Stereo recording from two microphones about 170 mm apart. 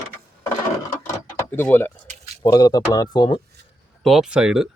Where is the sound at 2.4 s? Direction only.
20° left (ahead or behind).